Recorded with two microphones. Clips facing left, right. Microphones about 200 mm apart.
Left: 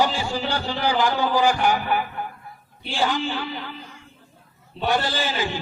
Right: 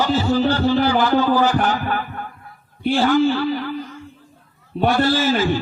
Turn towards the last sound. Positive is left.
turn(degrees=15)  # may be behind; listen again after turning